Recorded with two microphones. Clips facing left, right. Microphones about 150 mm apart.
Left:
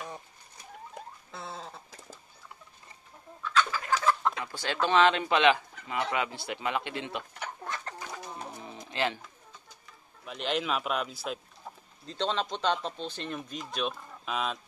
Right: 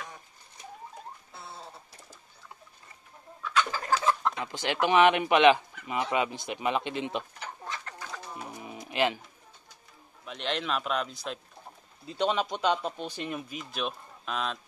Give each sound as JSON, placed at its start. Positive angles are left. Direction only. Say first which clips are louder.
{"t": 1.3, "sound": "a sound", "louder": "left 7 dB", "side_deg": 90}
{"t": 3.7, "sound": "chicken", "louder": "right 1 dB", "side_deg": -30}
{"t": 4.4, "sound": "speech", "louder": "right 2 dB", "side_deg": -20}
{"t": 7.3, "sound": "bird", "louder": "left 2 dB", "side_deg": 55}
{"t": 8.8, "sound": "speech", "louder": "right 3 dB", "side_deg": -15}
{"t": 10.2, "sound": "speech", "louder": "left 1 dB", "side_deg": 0}
{"t": 12.1, "sound": "speech", "louder": "right 3 dB", "side_deg": -10}